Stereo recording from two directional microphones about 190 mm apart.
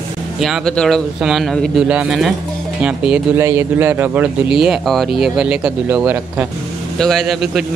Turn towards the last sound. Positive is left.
turn(degrees=0)  # may be behind; listen again after turning